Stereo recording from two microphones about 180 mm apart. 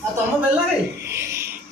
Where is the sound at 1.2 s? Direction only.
15° right (ahead or behind).